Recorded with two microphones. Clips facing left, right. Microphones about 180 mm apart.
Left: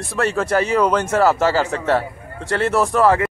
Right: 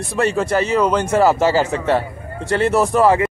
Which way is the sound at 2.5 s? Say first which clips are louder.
Right 2 dB; centre (ahead or behind).